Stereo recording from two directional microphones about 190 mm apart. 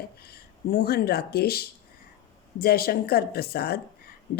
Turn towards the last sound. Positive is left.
turn(degrees=55)  # may be behind; listen again after turning